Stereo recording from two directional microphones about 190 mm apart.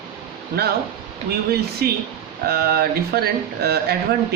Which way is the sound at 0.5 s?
55° right (ahead or behind).